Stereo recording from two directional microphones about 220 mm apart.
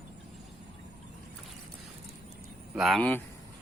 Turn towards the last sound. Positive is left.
turn(degrees=5)  # may be behind; listen again after turning